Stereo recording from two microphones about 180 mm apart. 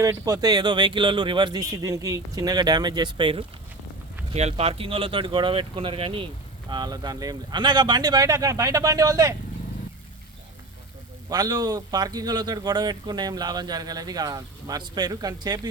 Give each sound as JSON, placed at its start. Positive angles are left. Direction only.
{"t": 0.0, "sound": "speech", "side_deg": -20}
{"t": 11.3, "sound": "speech", "side_deg": -20}